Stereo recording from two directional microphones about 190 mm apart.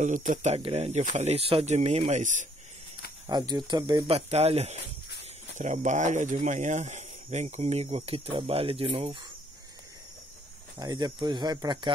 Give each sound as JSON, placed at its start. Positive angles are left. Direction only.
{"t": 0.0, "sound": "speech", "side_deg": -40}
{"t": 3.3, "sound": "speech", "side_deg": -20}
{"t": 4.3, "sound": "speech", "side_deg": -35}
{"t": 10.8, "sound": "speech", "side_deg": -20}